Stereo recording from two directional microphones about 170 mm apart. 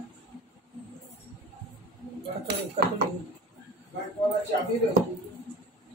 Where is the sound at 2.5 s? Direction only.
75° right (ahead or behind).